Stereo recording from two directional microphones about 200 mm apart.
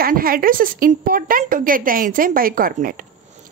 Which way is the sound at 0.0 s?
45° right (ahead or behind).